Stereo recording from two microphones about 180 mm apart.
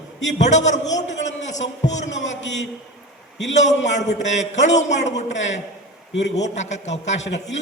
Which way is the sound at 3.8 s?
40° left (ahead or behind).